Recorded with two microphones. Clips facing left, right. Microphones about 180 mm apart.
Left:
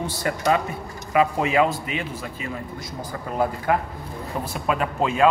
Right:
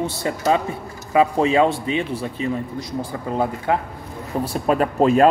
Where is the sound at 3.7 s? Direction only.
25° right (ahead or behind).